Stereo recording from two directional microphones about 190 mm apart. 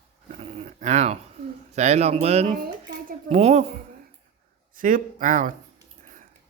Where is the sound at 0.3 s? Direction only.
35° right (ahead or behind).